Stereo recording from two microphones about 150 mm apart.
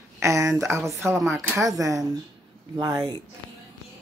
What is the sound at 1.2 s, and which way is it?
Speech, centre (ahead or behind).